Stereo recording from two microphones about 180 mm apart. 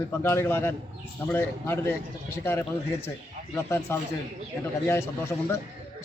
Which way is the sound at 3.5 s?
15° left (ahead or behind).